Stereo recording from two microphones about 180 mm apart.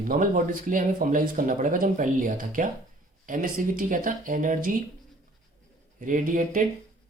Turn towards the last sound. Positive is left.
turn(degrees=-50)  # may be behind; listen again after turning